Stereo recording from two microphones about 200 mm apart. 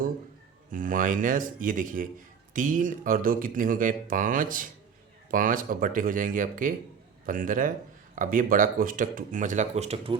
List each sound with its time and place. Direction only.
0.7 s speech: 40° right (ahead or behind)